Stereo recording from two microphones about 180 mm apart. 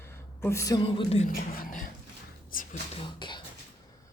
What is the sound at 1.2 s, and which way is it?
Speech, 50° left (ahead or behind).